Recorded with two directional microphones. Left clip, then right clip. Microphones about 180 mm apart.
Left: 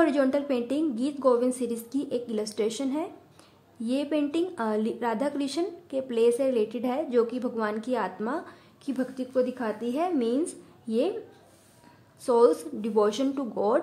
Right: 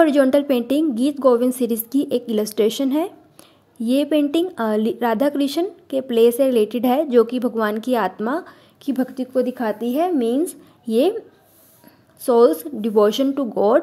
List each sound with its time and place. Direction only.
0.0 s speech: 35° right (ahead or behind)
12.2 s speech: 35° right (ahead or behind)